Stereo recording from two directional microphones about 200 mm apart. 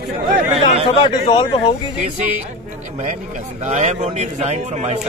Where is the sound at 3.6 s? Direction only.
35° right (ahead or behind).